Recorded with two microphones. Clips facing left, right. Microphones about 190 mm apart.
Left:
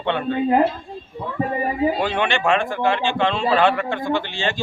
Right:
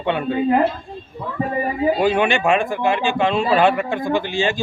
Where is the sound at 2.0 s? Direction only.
10° right (ahead or behind).